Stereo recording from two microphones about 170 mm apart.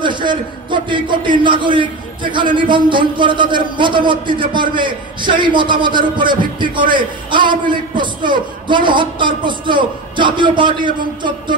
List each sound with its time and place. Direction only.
0.0 s a man's voice: 25° right (ahead or behind)